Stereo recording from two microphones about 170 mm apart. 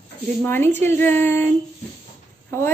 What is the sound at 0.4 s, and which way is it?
A woman's voice, 15° left (ahead or behind).